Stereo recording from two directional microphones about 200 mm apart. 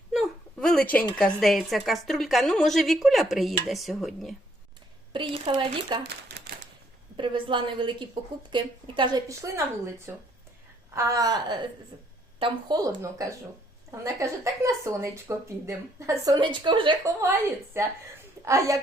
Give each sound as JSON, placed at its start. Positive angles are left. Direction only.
{"t": 0.1, "sound": "whimper", "side_deg": 0}
{"t": 1.1, "sound": "a woman's voice", "side_deg": 0}
{"t": 5.1, "sound": "speech", "side_deg": -25}
{"t": 6.0, "sound": "speech", "side_deg": -55}
{"t": 7.2, "sound": "speech", "side_deg": -25}
{"t": 10.9, "sound": "a woman's voice", "side_deg": -15}